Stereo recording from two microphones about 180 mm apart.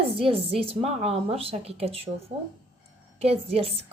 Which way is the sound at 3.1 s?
35° right (ahead or behind).